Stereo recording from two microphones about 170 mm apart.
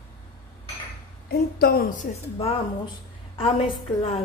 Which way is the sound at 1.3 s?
65° left (ahead or behind).